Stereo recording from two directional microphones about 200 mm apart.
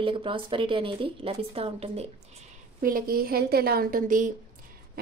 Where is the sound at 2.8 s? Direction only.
45° right (ahead or behind).